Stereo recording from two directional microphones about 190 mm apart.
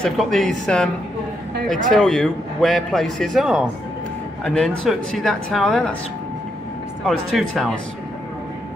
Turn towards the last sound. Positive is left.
turn(degrees=0)  # may be behind; listen again after turning